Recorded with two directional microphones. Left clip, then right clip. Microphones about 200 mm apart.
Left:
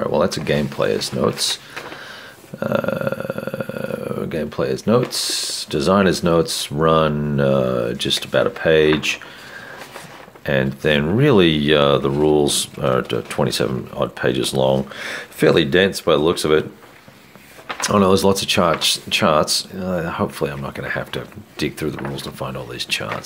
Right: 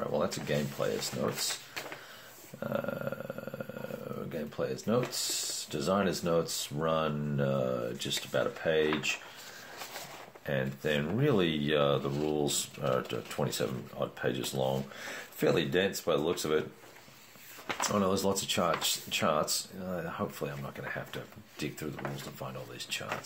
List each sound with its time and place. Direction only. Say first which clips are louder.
0.0 s speech: left 14 dB; 45° left (ahead or behind)
2.6 s speech: left 14 dB; 50° left (ahead or behind)
10.4 s speech: left 14 dB; 45° left (ahead or behind)
17.8 s speech: left 15 dB; 45° left (ahead or behind)